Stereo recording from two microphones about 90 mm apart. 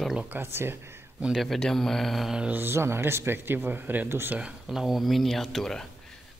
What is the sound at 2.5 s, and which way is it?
Speech, 25° right (ahead or behind).